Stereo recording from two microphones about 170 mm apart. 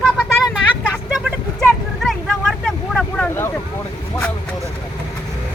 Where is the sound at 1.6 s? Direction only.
Centre (ahead or behind).